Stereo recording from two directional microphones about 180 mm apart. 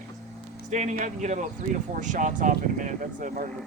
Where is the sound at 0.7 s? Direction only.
40° right (ahead or behind).